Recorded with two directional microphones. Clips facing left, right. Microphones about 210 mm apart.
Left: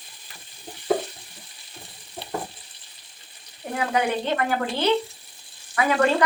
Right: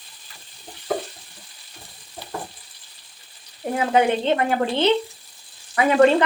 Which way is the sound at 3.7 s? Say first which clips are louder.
Right 5 dB; 25° right (ahead or behind).